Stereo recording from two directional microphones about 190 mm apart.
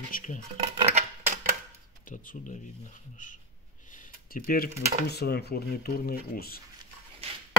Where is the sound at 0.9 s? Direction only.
35° right (ahead or behind).